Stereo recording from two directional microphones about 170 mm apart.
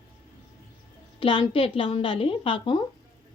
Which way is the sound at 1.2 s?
30° left (ahead or behind).